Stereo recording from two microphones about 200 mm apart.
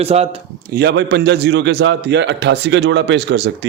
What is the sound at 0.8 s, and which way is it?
A man's voice, 55° right (ahead or behind).